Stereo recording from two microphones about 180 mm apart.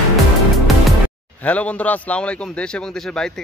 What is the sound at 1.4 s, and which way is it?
A man's voice, 10° left (ahead or behind).